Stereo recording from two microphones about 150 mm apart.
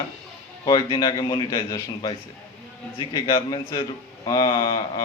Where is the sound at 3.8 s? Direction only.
25° left (ahead or behind).